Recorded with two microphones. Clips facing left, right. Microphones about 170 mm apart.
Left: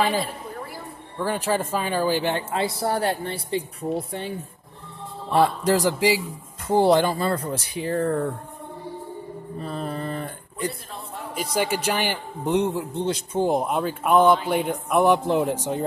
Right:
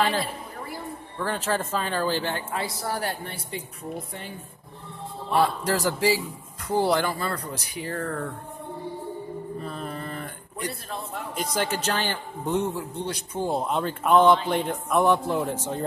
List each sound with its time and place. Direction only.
1.1 s a man's voice: 10° left (ahead or behind); by 4.2 s 30° left (ahead or behind)
5.3 s speech: 25° left (ahead or behind)
9.8 s a sound: 30° left (ahead or behind)
11.3 s a man's voice: 10° left (ahead or behind)